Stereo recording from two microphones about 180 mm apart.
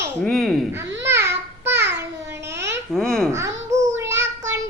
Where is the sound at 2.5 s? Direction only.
75° right (ahead or behind).